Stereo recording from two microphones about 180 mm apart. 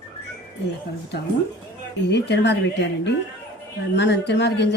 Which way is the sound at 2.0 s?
75° left (ahead or behind).